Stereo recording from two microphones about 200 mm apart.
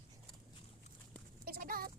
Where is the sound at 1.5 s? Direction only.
45° right (ahead or behind).